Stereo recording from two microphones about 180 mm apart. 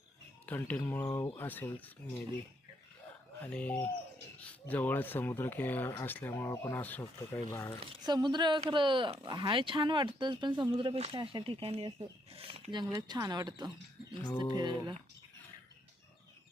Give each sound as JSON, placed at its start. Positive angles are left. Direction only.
{"t": 0.4, "sound": "speech", "side_deg": 10}
{"t": 3.4, "sound": "speech", "side_deg": 10}
{"t": 7.5, "sound": "speech", "side_deg": 20}
{"t": 8.0, "sound": "speech", "side_deg": -25}